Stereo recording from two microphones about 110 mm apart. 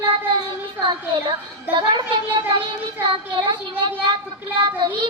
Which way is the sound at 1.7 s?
45° right (ahead or behind).